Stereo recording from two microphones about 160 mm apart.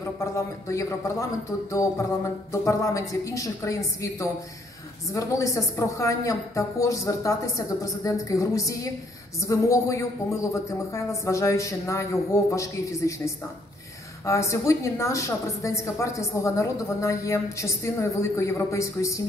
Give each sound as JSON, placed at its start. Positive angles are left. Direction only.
{"t": 0.0, "sound": "a woman's voice", "side_deg": 20}